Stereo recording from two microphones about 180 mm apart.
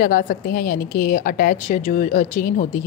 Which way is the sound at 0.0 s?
50° left (ahead or behind).